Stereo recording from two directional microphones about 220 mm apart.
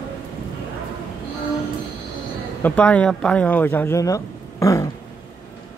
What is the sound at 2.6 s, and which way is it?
Speech, 5° left (ahead or behind).